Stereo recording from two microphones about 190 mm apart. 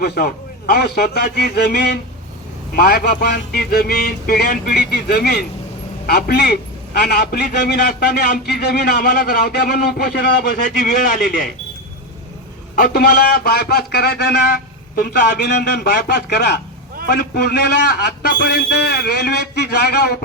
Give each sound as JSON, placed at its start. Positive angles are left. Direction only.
{"t": 0.0, "sound": "a man's voice", "side_deg": 55}
{"t": 12.8, "sound": "a man's voice", "side_deg": 55}